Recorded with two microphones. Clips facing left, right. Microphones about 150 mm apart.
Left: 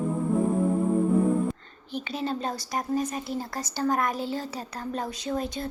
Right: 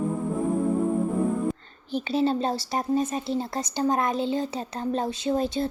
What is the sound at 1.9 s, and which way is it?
Speech, 30° right (ahead or behind).